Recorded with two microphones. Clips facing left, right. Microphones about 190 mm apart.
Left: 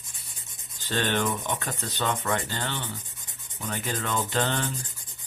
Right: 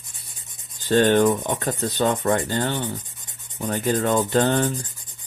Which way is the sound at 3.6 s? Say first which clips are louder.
Right 10 dB; 45° right (ahead or behind).